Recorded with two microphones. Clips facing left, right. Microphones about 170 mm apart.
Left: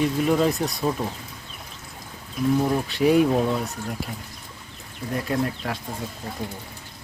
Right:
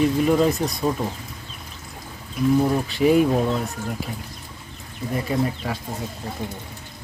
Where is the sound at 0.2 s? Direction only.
Centre (ahead or behind).